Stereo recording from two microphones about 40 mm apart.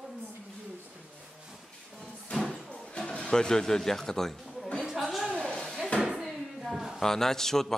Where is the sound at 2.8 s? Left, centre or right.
Left.